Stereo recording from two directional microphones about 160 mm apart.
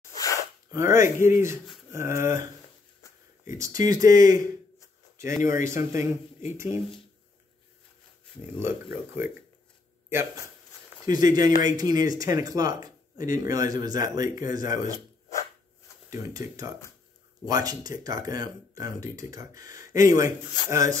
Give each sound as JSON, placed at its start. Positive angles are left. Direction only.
{"t": 0.1, "sound": "sneeze", "side_deg": 20}
{"t": 0.7, "sound": "speech", "side_deg": -20}
{"t": 3.5, "sound": "speech", "side_deg": -20}
{"t": 5.1, "sound": "a sound", "side_deg": -20}
{"t": 5.7, "sound": "speech", "side_deg": -15}
{"t": 8.4, "sound": "a man's voice", "side_deg": -15}
{"t": 16.1, "sound": "speech", "side_deg": -20}